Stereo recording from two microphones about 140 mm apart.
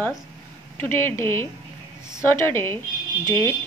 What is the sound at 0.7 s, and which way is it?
A woman's voice, 15° left (ahead or behind).